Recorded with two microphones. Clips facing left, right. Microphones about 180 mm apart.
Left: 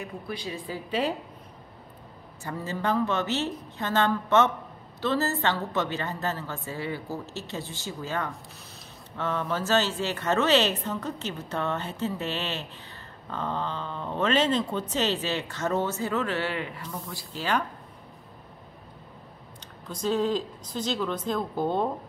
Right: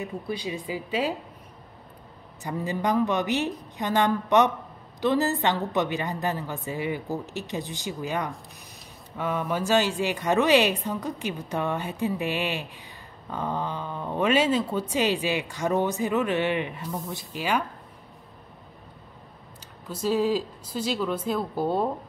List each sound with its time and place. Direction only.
0.0 s speech: 15° right (ahead or behind)
2.4 s speech: 15° right (ahead or behind)
19.9 s speech: 5° right (ahead or behind)